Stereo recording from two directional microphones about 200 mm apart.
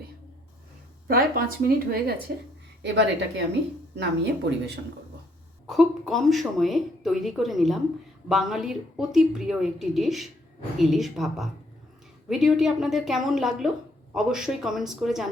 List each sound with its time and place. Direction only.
1.6 s speech: 50° right (ahead or behind)
2.8 s speech: 60° right (ahead or behind)
5.6 s a woman's voice: centre (ahead or behind)